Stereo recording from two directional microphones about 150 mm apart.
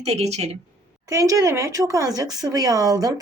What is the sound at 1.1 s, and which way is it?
Speech, 20° right (ahead or behind).